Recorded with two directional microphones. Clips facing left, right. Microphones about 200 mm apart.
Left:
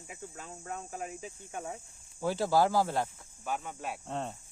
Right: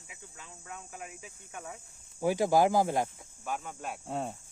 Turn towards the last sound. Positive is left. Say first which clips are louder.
# right 2 dB
turn(degrees=-5)  # may be behind; listen again after turning